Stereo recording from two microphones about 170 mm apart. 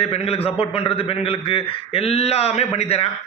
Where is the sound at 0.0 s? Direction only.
35° left (ahead or behind).